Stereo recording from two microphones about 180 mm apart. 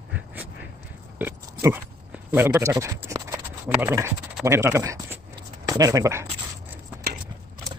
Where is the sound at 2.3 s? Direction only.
15° right (ahead or behind).